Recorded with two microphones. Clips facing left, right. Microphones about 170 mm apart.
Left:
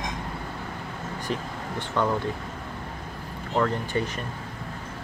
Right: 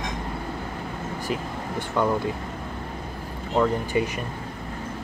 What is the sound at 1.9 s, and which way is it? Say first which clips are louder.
Speech: right 2 dB; 10° right (ahead or behind).